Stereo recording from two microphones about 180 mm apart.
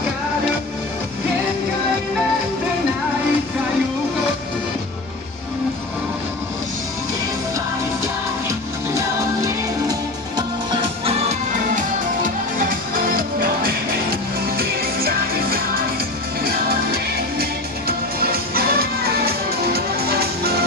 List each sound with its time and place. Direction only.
9.4 s music: 20° right (ahead or behind)
11.7 s music: 50° right (ahead or behind)